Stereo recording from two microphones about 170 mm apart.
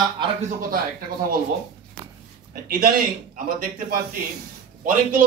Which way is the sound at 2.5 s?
60° right (ahead or behind).